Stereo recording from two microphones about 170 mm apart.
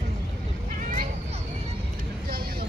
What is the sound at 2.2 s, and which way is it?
Vehicle, 60° right (ahead or behind).